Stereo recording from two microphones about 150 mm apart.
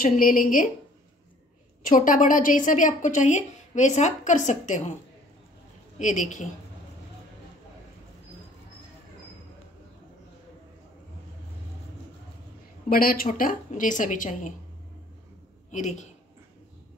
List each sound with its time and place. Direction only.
0.0 s a woman's voice: 65° left (ahead or behind)
1.8 s a woman's voice: 60° left (ahead or behind)
5.9 s a woman's voice: 55° left (ahead or behind)
12.9 s a woman's voice: 75° left (ahead or behind)
15.7 s a woman's voice: 55° left (ahead or behind)